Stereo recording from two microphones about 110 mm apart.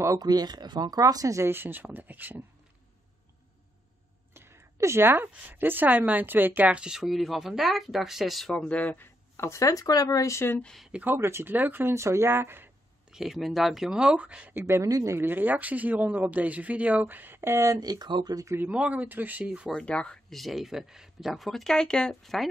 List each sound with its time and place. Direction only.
0.0 s speech: 35° right (ahead or behind); by 2.4 s 15° right (ahead or behind)
4.3 s a woman's voice: 25° right (ahead or behind); by 10.6 s 25° left (ahead or behind)
10.6 s a woman's voice: 5° left (ahead or behind)
10.9 s speech: 15° right (ahead or behind)
11.1 s speech: 25° right (ahead or behind)
13.1 s speech: 5° right (ahead or behind); by 17.7 s 25° right (ahead or behind)
17.7 s speech: 40° right (ahead or behind)
18.6 s speech: 10° right (ahead or behind)
19.7 s a woman's voice: 10° left (ahead or behind)